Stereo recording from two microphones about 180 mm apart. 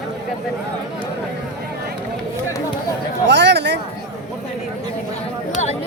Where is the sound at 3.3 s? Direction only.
75° right (ahead or behind).